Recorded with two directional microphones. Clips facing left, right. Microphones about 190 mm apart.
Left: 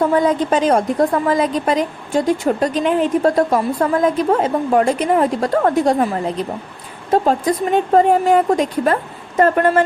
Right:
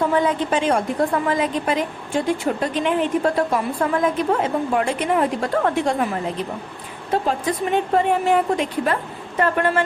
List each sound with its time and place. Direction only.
0.2 s a woman's voice: 40° left (ahead or behind)